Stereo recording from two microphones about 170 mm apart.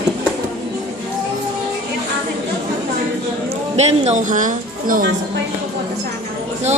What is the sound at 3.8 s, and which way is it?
Speech, 40° right (ahead or behind).